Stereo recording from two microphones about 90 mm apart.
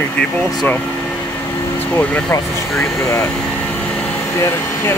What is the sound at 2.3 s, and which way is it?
Speech, 30° left (ahead or behind).